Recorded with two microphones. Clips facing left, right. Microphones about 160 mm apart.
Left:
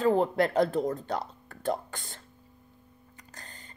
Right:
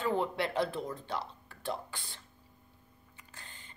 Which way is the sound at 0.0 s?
40° left (ahead or behind).